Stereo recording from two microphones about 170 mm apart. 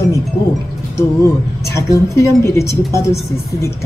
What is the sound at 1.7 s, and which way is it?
Speech, 15° left (ahead or behind).